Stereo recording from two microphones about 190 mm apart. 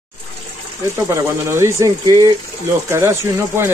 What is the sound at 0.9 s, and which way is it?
Speech, 15° right (ahead or behind).